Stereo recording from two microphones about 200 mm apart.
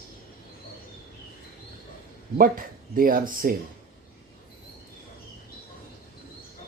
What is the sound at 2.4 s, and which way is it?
Speech, 45° right (ahead or behind).